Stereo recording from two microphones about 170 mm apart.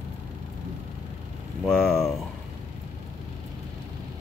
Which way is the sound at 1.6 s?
Centre (ahead or behind).